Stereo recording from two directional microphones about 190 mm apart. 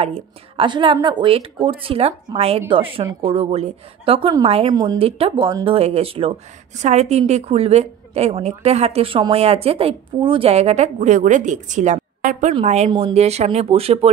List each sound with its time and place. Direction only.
0.0 s a woman's voice: 30° right (ahead or behind)